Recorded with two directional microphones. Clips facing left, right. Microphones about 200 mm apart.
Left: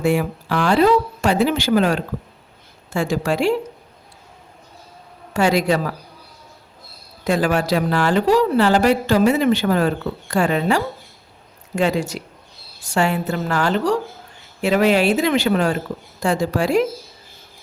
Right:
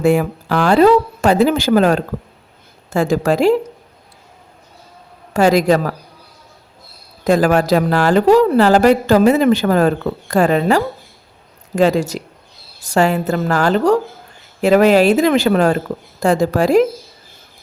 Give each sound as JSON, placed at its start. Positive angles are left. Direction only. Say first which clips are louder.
{"t": 0.2, "sound": "a woman's voice", "louder": "right 4 dB", "side_deg": -40}
{"t": 5.3, "sound": "a woman's voice", "louder": "right 5 dB", "side_deg": -40}
{"t": 7.3, "sound": "a woman's voice", "louder": "right 5 dB", "side_deg": -40}